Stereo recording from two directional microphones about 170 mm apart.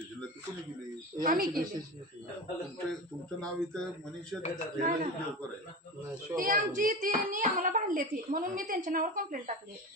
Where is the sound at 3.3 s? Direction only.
5° left (ahead or behind).